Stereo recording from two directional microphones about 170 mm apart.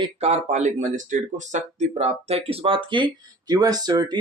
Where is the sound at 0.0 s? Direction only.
40° right (ahead or behind).